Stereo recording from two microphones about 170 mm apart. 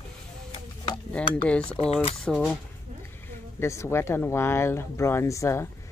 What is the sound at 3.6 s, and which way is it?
Speech, 15° left (ahead or behind).